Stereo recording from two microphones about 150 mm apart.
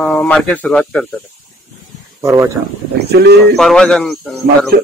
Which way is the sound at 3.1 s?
90° right.